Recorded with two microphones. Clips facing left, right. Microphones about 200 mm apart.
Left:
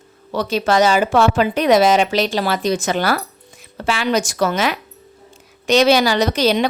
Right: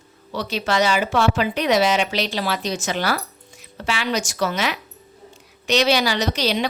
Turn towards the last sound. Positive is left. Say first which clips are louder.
# left 6 dB
turn(degrees=50)  # may be behind; listen again after turning